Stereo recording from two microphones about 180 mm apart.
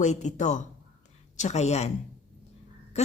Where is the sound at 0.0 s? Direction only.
40° left (ahead or behind).